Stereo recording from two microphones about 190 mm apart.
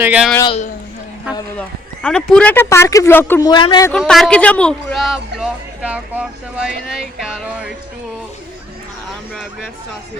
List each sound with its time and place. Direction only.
0.0 s speech: 5° right (ahead or behind)
0.4 s speech: 30° left (ahead or behind)
1.5 s speech: 5° left (ahead or behind)
3.5 s a man's voice: 25° left (ahead or behind)
3.8 s speech: 5° left (ahead or behind)